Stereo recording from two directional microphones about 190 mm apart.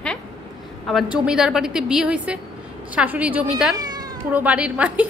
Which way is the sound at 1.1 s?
5° right (ahead or behind).